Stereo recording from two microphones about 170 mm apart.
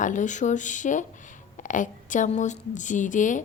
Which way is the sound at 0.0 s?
45° left (ahead or behind).